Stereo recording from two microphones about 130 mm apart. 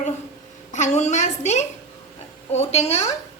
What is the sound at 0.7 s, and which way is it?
A woman's voice, 65° left (ahead or behind).